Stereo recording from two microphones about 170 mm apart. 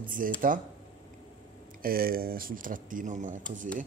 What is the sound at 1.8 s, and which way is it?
A man's voice, 60° right (ahead or behind).